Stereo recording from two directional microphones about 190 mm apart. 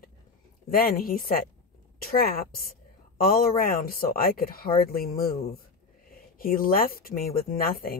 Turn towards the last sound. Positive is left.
turn(degrees=50)  # may be behind; listen again after turning